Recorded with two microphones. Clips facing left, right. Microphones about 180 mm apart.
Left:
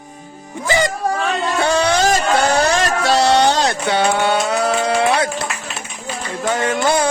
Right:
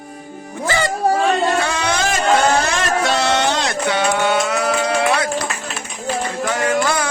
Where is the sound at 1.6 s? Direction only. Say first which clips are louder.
Left 5 dB; 35° left (ahead or behind).